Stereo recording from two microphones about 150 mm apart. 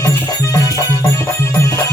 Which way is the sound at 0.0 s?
20° left (ahead or behind).